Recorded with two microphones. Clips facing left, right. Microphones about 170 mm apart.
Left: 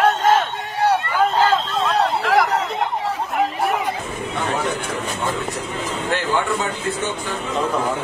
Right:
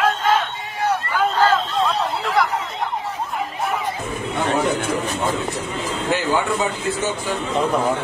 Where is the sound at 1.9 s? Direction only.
80° left.